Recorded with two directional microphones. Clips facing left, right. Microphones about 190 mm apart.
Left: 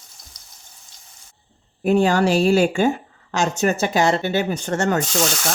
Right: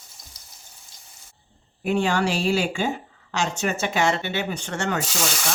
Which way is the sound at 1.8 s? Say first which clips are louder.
Left 6 dB; 40° left (ahead or behind).